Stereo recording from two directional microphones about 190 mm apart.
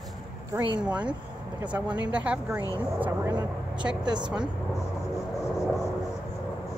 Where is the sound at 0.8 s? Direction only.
5° right (ahead or behind).